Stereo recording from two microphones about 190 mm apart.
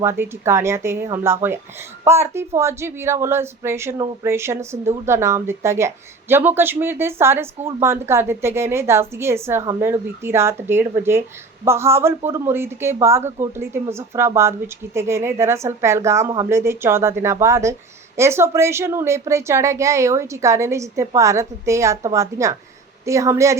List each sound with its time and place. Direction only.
0.0 s a woman's voice: 15° right (ahead or behind)